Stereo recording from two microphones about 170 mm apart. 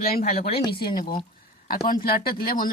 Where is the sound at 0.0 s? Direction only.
60° left (ahead or behind).